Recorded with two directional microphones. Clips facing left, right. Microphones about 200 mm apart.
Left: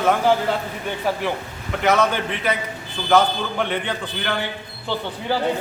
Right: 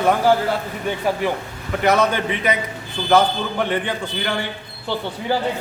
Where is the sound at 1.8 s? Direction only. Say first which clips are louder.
Right 1 dB; 15° right (ahead or behind).